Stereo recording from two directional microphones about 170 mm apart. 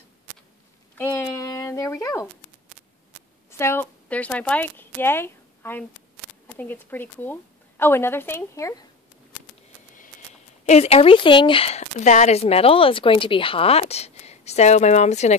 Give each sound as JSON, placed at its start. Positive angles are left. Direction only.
{"t": 0.9, "sound": "a sound", "side_deg": 15}
{"t": 3.4, "sound": "a woman's voice", "side_deg": 15}
{"t": 10.6, "sound": "speech", "side_deg": 40}